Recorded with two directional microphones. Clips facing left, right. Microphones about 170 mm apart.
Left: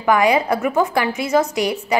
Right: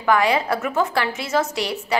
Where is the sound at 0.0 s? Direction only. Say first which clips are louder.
Left 3 dB; 15° left (ahead or behind).